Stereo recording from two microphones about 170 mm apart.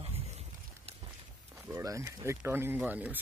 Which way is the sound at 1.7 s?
15° right (ahead or behind).